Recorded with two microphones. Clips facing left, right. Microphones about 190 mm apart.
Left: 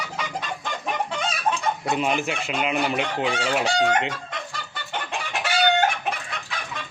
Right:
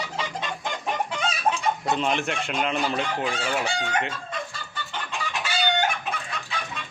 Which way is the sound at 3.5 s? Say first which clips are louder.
Left 6 dB; 75° left (ahead or behind).